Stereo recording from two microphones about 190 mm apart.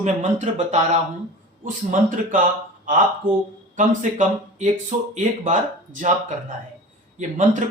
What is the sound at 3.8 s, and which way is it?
Speech, 40° right (ahead or behind).